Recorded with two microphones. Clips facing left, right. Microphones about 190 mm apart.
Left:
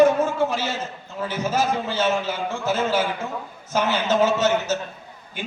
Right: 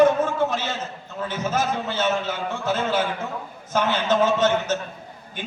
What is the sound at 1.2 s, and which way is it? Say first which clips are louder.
A man's voice: left 2 dB; 10° left (ahead or behind).